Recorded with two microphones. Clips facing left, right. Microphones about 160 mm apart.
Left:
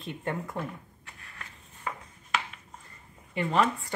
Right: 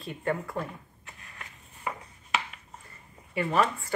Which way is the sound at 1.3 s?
10° right (ahead or behind).